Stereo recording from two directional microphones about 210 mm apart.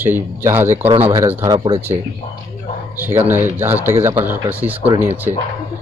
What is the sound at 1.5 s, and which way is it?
Speech, 25° right (ahead or behind).